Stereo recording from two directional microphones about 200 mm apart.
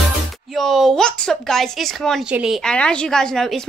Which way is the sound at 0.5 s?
Centre (ahead or behind).